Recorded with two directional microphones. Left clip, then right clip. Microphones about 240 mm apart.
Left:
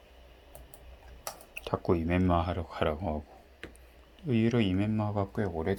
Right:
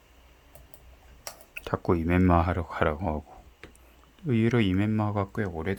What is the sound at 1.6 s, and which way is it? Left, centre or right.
Speech, right.